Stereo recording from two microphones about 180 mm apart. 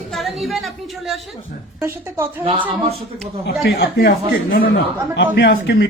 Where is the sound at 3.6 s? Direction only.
65° left (ahead or behind).